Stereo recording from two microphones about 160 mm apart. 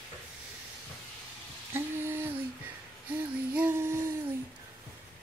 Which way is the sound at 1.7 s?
15° right (ahead or behind).